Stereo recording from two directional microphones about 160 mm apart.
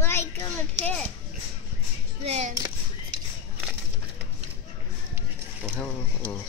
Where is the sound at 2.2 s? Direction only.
45° right (ahead or behind).